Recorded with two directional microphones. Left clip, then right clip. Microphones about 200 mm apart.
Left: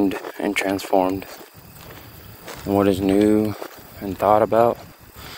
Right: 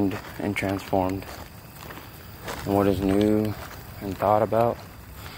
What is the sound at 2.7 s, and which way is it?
Speech, 55° left (ahead or behind).